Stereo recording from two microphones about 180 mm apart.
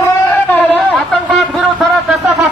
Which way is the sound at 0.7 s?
5° left (ahead or behind).